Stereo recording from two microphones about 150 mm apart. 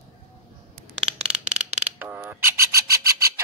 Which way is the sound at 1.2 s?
5° right (ahead or behind).